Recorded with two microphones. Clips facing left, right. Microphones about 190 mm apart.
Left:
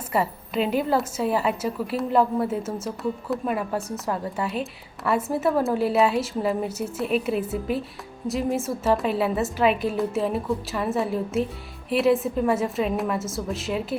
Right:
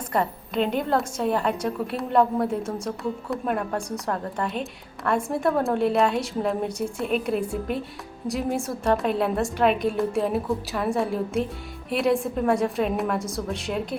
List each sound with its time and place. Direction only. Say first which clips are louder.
0.1 s a woman's voice: left 1 dB; 5° left (ahead or behind)